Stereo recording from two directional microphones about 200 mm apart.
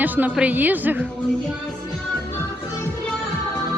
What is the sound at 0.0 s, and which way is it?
Speech, 10° right (ahead or behind).